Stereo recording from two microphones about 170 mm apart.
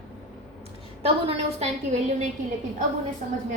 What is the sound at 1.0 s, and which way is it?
Speech, 35° right (ahead or behind).